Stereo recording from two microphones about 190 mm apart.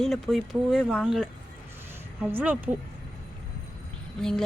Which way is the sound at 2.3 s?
10° right (ahead or behind).